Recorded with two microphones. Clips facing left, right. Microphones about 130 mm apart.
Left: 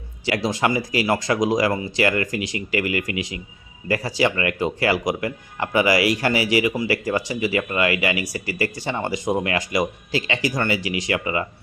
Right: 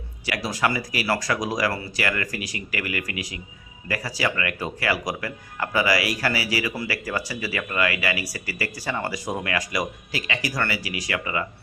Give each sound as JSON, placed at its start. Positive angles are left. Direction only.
{"t": 0.3, "sound": "speech", "side_deg": 25}